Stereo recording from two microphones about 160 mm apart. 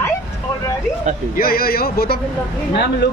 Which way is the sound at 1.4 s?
70° left (ahead or behind).